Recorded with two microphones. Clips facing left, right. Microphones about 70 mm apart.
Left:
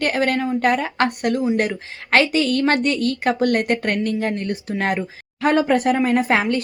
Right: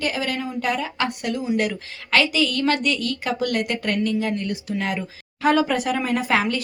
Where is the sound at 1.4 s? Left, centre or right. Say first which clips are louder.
Left 3 dB; left.